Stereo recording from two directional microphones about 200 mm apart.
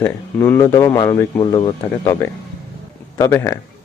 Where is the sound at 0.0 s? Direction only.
10° left (ahead or behind).